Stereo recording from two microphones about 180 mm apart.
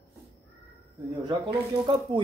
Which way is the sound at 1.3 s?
25° right (ahead or behind).